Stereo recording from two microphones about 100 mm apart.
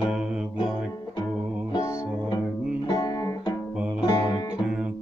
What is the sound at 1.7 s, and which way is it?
Music, 40° left (ahead or behind).